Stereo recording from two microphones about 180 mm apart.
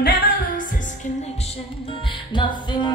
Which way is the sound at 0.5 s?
45° left (ahead or behind).